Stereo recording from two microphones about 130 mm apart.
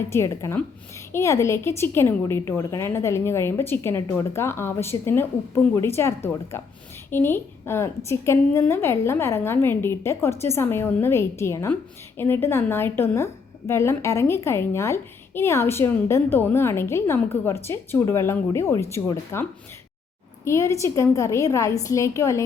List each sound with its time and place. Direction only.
0.1 s a woman's voice: 25° left (ahead or behind)